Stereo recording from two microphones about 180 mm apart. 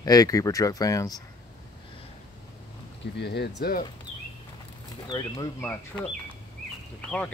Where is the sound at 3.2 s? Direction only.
70° left (ahead or behind).